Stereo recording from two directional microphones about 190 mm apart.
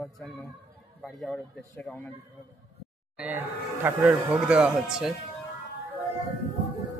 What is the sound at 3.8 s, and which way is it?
Speech, 5° right (ahead or behind).